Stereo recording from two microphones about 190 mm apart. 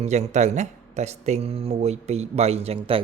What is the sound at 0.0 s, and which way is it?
Speech, 35° right (ahead or behind).